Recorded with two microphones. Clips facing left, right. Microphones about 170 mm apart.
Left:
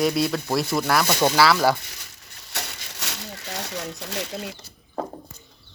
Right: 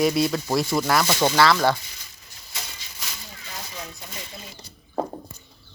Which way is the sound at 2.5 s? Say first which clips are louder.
Left 5 dB; 70° left (ahead or behind).